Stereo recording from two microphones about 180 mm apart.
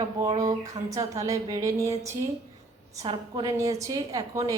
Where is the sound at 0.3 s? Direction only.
20° right (ahead or behind).